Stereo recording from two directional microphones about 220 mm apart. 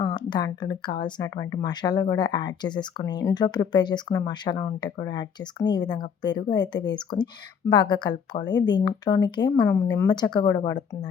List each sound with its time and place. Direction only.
0.0 s speech: 20° left (ahead or behind)